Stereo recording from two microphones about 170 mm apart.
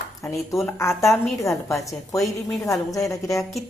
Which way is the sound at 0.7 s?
15° left (ahead or behind).